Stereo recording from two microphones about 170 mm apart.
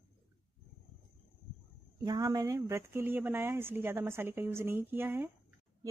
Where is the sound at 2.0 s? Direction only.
25° right (ahead or behind).